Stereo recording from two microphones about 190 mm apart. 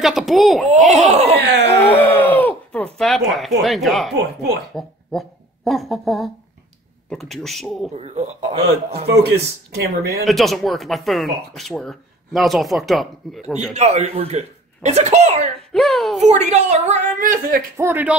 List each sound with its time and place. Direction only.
0.0 s speech: centre (ahead or behind)
1.0 s speech: 35° right (ahead or behind)
1.4 s speech: 60° right (ahead or behind)
2.0 s a sound: 10° left (ahead or behind)
3.6 s speech: centre (ahead or behind)
7.9 s speech: 35° right (ahead or behind)
9.7 s speech: 55° right (ahead or behind)
10.2 s speech: centre (ahead or behind)
13.7 s speech: 35° right (ahead or behind)
15.7 s speech: centre (ahead or behind)
16.2 s speech: 35° right (ahead or behind)
17.7 s a man's voice: 10° right (ahead or behind)